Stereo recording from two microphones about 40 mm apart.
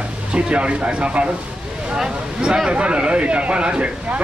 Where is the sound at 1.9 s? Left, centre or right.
Centre.